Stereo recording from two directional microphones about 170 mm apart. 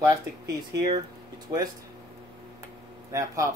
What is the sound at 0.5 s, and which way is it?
Speech, 25° right (ahead or behind).